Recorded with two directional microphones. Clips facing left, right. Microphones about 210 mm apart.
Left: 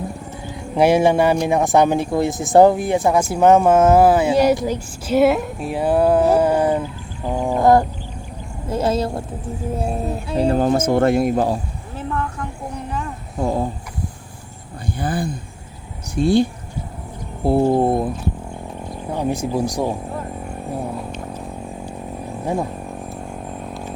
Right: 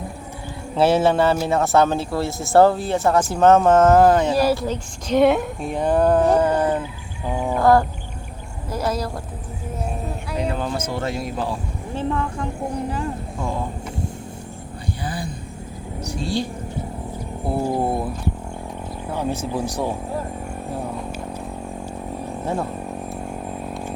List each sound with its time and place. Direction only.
0.8 s speech: 15° left (ahead or behind)
7.3 s a sound: 15° left (ahead or behind)
8.7 s speech: 25° left (ahead or behind); by 11.6 s 45° left (ahead or behind)
11.9 s vehicle: 30° right (ahead or behind)
13.4 s speech: 40° left (ahead or behind)
14.9 s speech: 50° left (ahead or behind)
17.4 s speech: 30° left (ahead or behind)
19.1 s speech: 15° left (ahead or behind)